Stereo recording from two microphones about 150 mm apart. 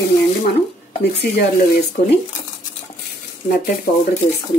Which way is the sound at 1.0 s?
90° left.